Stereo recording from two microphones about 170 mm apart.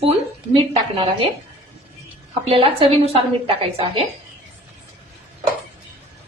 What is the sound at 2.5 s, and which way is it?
A woman's voice, 35° right (ahead or behind).